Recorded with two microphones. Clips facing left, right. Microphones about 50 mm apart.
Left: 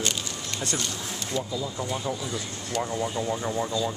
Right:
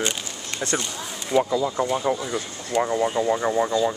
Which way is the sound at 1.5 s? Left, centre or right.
Right.